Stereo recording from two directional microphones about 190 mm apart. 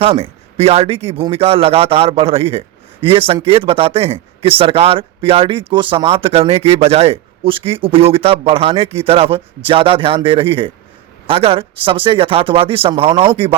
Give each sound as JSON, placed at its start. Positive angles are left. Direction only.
{"t": 0.0, "sound": "a man's voice", "side_deg": -30}